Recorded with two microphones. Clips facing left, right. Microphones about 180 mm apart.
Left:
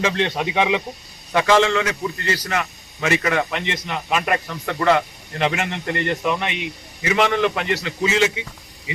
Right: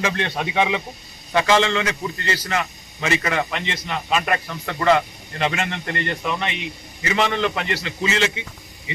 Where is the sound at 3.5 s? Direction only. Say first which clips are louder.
Left 1 dB; 15° left (ahead or behind).